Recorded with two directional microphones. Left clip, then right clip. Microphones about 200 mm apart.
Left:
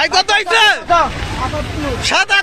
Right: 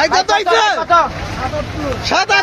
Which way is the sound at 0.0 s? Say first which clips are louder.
Even; 15° left (ahead or behind).